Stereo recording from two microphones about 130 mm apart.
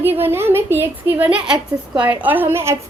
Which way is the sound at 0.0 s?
15° right (ahead or behind).